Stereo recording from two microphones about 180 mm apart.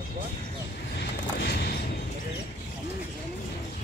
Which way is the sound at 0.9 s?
65° left (ahead or behind).